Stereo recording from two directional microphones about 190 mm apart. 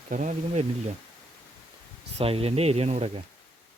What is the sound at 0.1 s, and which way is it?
Speech, 40° right (ahead or behind).